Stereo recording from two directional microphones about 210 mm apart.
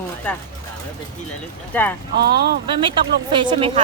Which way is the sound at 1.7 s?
10° left (ahead or behind).